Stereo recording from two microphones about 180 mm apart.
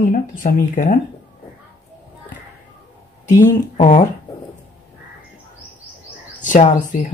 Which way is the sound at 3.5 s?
40° left (ahead or behind).